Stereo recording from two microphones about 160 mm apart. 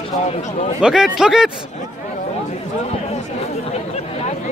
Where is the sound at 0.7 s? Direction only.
5° right (ahead or behind).